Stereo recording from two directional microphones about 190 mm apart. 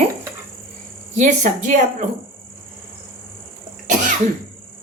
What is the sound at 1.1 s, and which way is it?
Speech, 40° right (ahead or behind).